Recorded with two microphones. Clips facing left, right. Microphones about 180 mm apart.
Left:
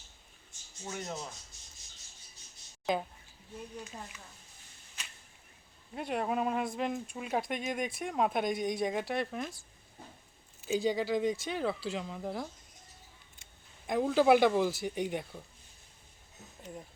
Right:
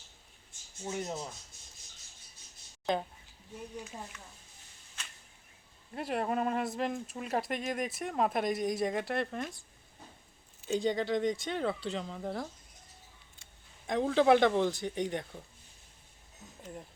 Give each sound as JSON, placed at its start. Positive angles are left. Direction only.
{"t": 0.9, "sound": "speech", "side_deg": -20}
{"t": 2.8, "sound": "speech", "side_deg": 5}
{"t": 5.9, "sound": "speech", "side_deg": 0}
{"t": 10.7, "sound": "speech", "side_deg": 5}
{"t": 13.8, "sound": "speech", "side_deg": 5}